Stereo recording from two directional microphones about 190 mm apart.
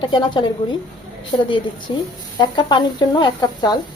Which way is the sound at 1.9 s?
25° left (ahead or behind).